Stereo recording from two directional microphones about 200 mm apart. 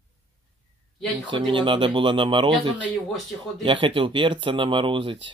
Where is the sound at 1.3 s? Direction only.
25° right (ahead or behind).